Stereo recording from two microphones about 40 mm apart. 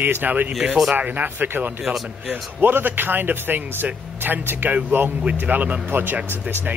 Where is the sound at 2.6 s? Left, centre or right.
Right.